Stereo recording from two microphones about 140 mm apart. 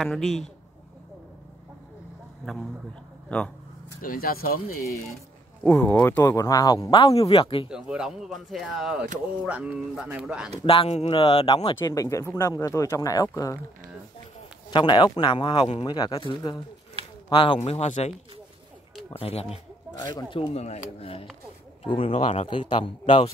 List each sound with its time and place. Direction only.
0.0 s speech: 5° left (ahead or behind)
3.3 s speech: 10° left (ahead or behind)
4.0 s speech: 90° left
5.6 s speech: 10° left (ahead or behind); by 7.7 s 40° left (ahead or behind)
7.7 s speech: 5° right (ahead or behind)
10.6 s a man's voice: 40° left (ahead or behind); by 13.6 s 25° left (ahead or behind)
14.7 s speech: 35° left (ahead or behind)
17.6 s speech: 55° left (ahead or behind)
19.1 s speech: 45° left (ahead or behind)
20.1 s speech: 35° left (ahead or behind)